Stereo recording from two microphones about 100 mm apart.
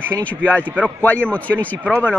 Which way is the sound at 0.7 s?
15° right (ahead or behind).